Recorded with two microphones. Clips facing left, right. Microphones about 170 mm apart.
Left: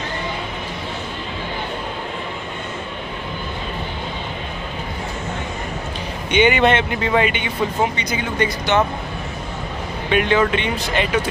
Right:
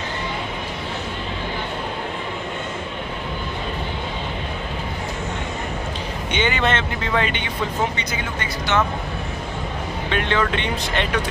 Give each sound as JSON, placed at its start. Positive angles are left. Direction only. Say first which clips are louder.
{"t": 6.3, "sound": "speech", "louder": "left 6 dB", "side_deg": 15}
{"t": 8.7, "sound": "speech", "louder": "left 2 dB", "side_deg": 15}
{"t": 10.1, "sound": "speech", "louder": "left 5 dB", "side_deg": 10}